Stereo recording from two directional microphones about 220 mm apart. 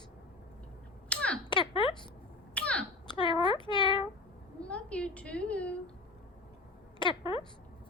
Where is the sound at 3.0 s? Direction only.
20° left (ahead or behind).